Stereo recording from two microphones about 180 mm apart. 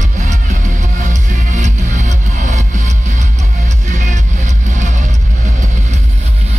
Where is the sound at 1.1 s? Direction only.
40° right (ahead or behind).